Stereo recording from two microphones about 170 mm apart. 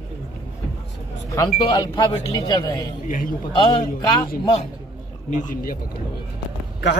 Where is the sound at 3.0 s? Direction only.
50° left (ahead or behind).